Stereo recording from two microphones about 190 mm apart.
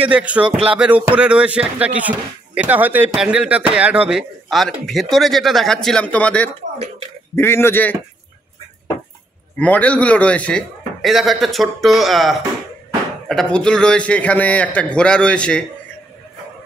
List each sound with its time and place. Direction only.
0.0 s a man's voice: 5° right (ahead or behind); by 8.0 s 10° left (ahead or behind)
9.6 s a man's voice: 5° left (ahead or behind)